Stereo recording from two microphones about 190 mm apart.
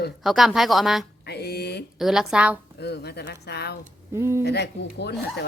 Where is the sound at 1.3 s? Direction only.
55° left (ahead or behind).